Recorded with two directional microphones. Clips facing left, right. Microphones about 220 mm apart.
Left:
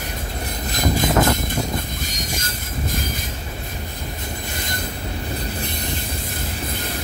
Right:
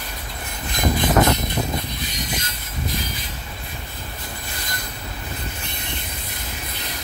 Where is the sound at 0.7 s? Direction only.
45° left (ahead or behind).